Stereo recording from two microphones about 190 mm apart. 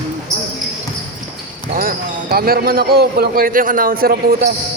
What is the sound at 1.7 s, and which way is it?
Speech, 50° right (ahead or behind).